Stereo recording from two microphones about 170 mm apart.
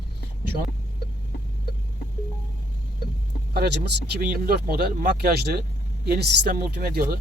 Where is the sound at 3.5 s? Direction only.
70° right (ahead or behind).